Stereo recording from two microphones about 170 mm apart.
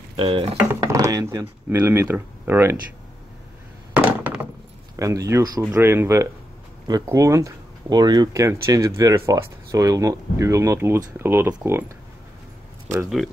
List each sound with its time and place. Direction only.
0.2 s speech: 30° right (ahead or behind)
0.7 s speech: 20° right (ahead or behind)
3.9 s a sound: 10° right (ahead or behind)
4.9 s speech: 20° right (ahead or behind)